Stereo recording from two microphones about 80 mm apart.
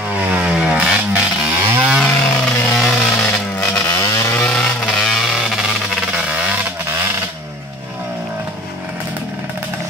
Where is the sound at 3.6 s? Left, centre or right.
Centre.